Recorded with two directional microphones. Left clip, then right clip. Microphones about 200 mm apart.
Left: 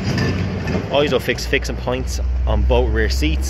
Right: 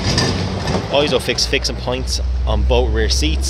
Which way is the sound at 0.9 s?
Centre (ahead or behind).